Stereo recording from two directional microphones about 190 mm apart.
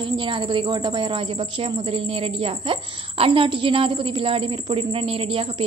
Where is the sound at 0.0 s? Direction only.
25° right (ahead or behind).